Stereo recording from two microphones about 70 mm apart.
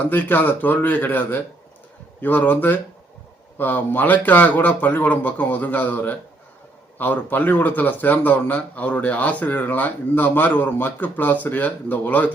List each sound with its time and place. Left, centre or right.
0.0 s speech: left